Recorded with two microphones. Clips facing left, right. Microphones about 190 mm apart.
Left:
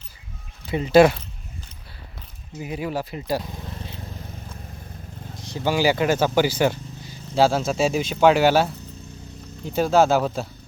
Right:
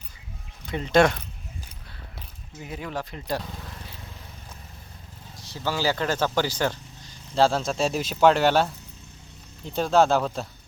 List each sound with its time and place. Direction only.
0.7 s speech: 5° left (ahead or behind)
2.6 s speech: 10° left (ahead or behind)
3.5 s vehicle: 20° left (ahead or behind)
5.4 s speech: 20° left (ahead or behind)